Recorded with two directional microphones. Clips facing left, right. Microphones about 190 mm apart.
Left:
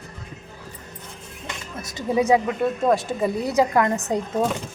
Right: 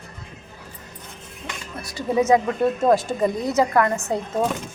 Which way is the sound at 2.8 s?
Centre (ahead or behind).